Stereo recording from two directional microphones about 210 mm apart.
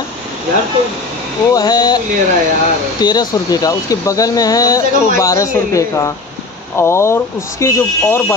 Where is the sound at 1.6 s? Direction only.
20° left (ahead or behind).